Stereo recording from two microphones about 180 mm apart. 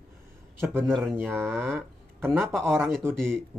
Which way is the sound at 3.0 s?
15° right (ahead or behind).